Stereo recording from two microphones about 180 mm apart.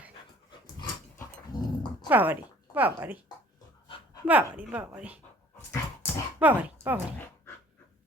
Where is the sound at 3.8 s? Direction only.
30° left (ahead or behind).